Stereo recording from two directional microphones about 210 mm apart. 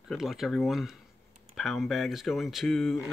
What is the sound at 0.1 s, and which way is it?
Speech, centre (ahead or behind).